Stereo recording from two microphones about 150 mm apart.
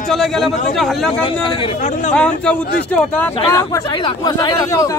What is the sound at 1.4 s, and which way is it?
Speech, 35° left (ahead or behind).